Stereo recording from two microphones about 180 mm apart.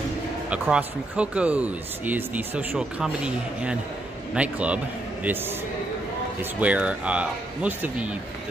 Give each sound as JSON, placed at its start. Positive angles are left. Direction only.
{"t": 0.5, "sound": "speech", "side_deg": -5}
{"t": 6.6, "sound": "speech", "side_deg": -5}